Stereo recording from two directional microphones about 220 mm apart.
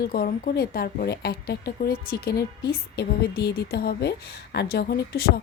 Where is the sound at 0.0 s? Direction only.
45° left (ahead or behind).